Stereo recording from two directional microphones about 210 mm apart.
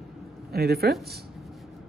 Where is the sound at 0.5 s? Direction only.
50° right (ahead or behind).